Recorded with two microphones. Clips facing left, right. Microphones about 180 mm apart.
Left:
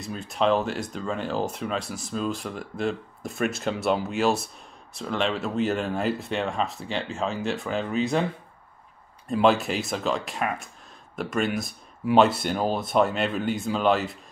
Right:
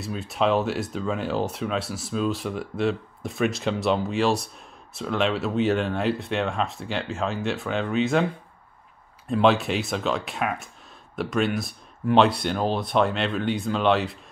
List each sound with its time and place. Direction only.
0.0 s speech: centre (ahead or behind)
9.3 s speech: centre (ahead or behind)